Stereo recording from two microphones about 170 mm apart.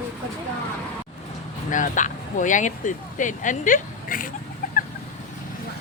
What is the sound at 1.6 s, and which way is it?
Speech, 50° left (ahead or behind).